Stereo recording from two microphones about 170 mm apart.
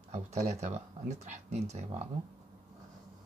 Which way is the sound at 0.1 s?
40° right (ahead or behind).